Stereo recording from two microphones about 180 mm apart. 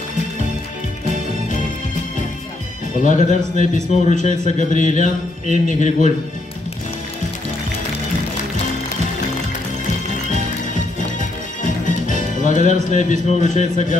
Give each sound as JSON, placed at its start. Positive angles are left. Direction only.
{"t": 3.0, "sound": "a man's voice", "side_deg": 45}
{"t": 11.8, "sound": "music", "side_deg": 45}
{"t": 12.9, "sound": "a man's voice", "side_deg": 45}